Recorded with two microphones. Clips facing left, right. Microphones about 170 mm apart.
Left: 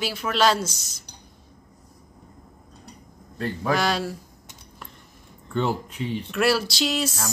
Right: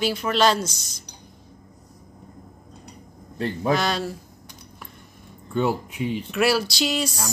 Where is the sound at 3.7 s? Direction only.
5° left (ahead or behind).